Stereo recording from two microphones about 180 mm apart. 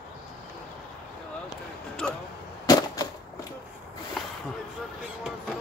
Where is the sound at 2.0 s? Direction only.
5° left (ahead or behind).